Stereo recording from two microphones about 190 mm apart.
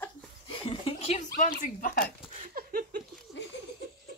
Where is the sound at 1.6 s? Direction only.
45° left (ahead or behind).